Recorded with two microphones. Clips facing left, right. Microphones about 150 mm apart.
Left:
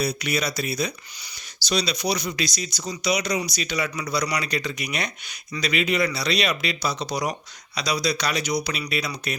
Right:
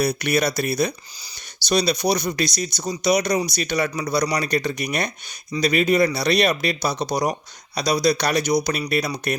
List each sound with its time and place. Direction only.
0.0 s speech: 65° right (ahead or behind); by 9.4 s 50° right (ahead or behind)